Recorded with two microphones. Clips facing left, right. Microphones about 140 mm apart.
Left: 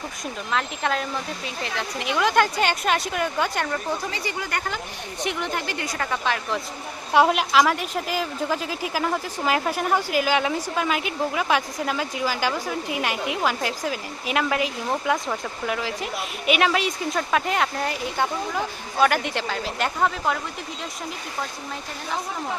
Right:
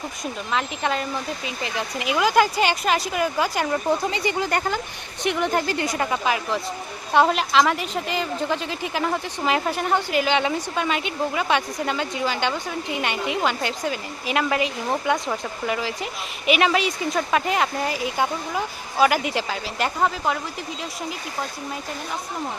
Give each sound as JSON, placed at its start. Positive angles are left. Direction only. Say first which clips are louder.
{"t": 0.5, "sound": "a woman's voice", "louder": "even", "side_deg": 0}
{"t": 4.1, "sound": "speech", "louder": "right 6 dB", "side_deg": -20}
{"t": 5.2, "sound": "speech", "louder": "right 5 dB", "side_deg": -60}
{"t": 5.5, "sound": "speech", "louder": "right 6 dB", "side_deg": -35}
{"t": 5.8, "sound": "speech", "louder": "right 4 dB", "side_deg": -20}
{"t": 6.1, "sound": "speech", "louder": "right 2 dB", "side_deg": -5}
{"t": 7.1, "sound": "a woman's voice", "louder": "even", "side_deg": 10}